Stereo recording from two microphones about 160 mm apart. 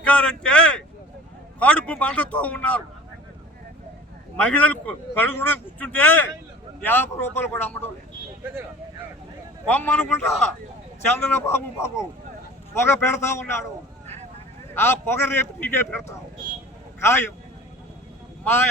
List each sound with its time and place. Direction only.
0.0 s a man's voice: 10° left (ahead or behind)
4.4 s a man's voice: 10° left (ahead or behind)
9.6 s a man's voice: 10° left (ahead or behind)
14.8 s a man's voice: 15° left (ahead or behind)
17.0 s a man's voice: 15° left (ahead or behind)